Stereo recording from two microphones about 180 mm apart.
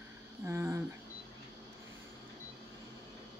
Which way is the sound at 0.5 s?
15° right (ahead or behind).